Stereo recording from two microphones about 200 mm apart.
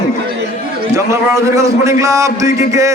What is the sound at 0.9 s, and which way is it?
A man's voice, 15° right (ahead or behind).